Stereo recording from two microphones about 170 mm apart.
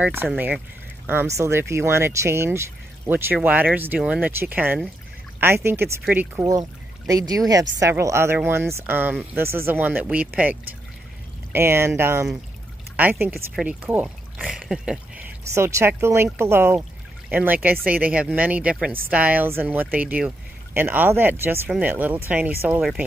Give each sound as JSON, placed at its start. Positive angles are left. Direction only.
{"t": 0.0, "sound": "speech", "side_deg": -15}
{"t": 15.5, "sound": "speech", "side_deg": -15}